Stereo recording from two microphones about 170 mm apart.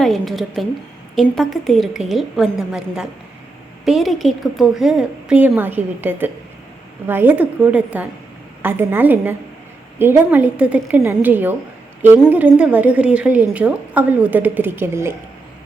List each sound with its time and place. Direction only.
0.0 s a woman's voice: centre (ahead or behind)